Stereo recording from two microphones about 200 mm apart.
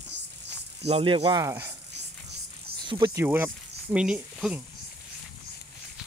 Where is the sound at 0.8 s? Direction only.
30° right (ahead or behind).